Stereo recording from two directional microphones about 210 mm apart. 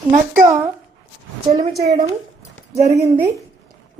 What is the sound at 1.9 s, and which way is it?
A woman's voice, 15° right (ahead or behind).